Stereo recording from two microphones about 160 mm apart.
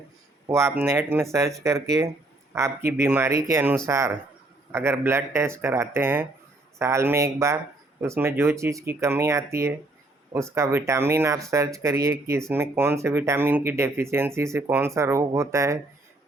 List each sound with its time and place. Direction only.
0.4 s speech: 20° right (ahead or behind)